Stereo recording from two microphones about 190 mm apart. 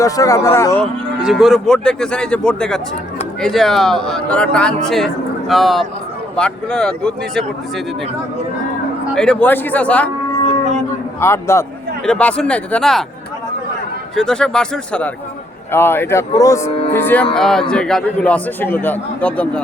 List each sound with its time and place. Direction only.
0.0 s a man's voice: 15° left (ahead or behind)
0.8 s speech: centre (ahead or behind)
9.1 s a man's voice: 5° left (ahead or behind)
11.2 s a man's voice: 15° left (ahead or behind)
14.2 s a man's voice: 5° left (ahead or behind)